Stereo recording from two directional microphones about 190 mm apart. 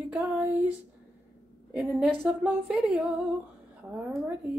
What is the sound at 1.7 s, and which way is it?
Speech, 5° right (ahead or behind).